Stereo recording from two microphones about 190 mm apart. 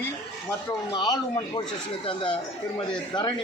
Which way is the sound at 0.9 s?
20° left (ahead or behind).